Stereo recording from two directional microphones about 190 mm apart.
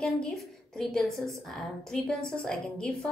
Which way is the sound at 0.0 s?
5° left (ahead or behind).